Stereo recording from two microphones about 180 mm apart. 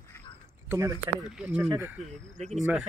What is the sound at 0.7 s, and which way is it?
Speech, 15° right (ahead or behind).